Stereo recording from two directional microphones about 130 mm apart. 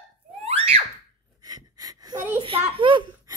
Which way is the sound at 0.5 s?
50° right (ahead or behind).